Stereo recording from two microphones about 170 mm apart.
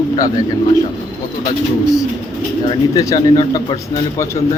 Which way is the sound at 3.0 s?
20° left (ahead or behind).